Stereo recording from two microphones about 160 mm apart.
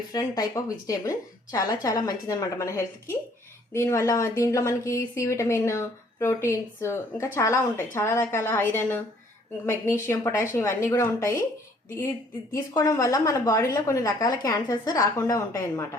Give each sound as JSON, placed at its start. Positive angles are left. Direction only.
{"t": 0.1, "sound": "a woman's voice", "side_deg": 25}
{"t": 10.1, "sound": "a woman's voice", "side_deg": 15}
{"t": 12.7, "sound": "a woman's voice", "side_deg": 20}